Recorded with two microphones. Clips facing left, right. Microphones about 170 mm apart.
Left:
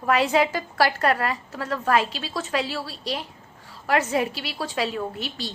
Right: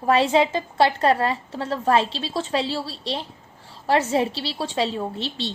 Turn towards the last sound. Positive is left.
turn(degrees=-30)  # may be behind; listen again after turning